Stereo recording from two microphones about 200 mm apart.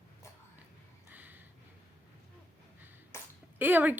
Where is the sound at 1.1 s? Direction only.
10° right (ahead or behind).